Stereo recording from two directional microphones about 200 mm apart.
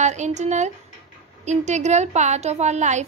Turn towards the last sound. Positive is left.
turn(degrees=-35)  # may be behind; listen again after turning